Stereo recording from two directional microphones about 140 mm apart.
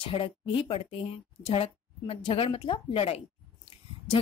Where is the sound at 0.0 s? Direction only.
40° left (ahead or behind).